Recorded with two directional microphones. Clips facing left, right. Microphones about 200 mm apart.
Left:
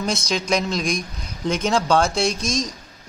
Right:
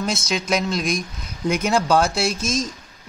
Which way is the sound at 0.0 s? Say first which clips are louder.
Even; 5° right (ahead or behind).